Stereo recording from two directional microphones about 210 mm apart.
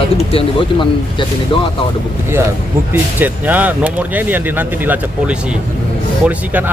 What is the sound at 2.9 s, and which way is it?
Speech, 10° right (ahead or behind).